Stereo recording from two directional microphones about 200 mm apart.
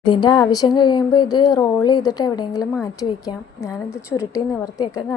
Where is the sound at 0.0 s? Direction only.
20° left (ahead or behind).